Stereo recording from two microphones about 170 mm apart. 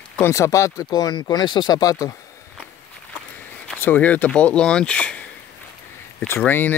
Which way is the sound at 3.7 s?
10° left (ahead or behind).